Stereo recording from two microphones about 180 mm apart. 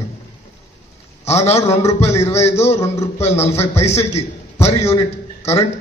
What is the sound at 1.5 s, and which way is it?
Speech, 15° left (ahead or behind).